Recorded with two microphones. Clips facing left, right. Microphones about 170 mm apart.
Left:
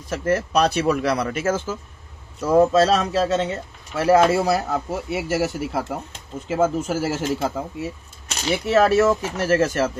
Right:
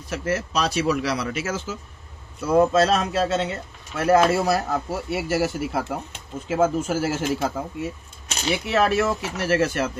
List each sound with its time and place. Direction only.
0.1 s speech: 50° left (ahead or behind)
2.4 s speech: 40° left (ahead or behind)
3.5 s speech: 25° left (ahead or behind)
4.8 s speech: centre (ahead or behind)
8.6 s speech: 40° left (ahead or behind)